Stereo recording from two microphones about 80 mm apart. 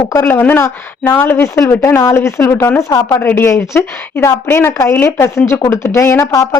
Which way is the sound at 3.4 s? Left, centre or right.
Left.